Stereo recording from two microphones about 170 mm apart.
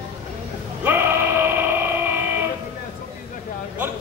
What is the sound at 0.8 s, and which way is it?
Music, 15° right (ahead or behind).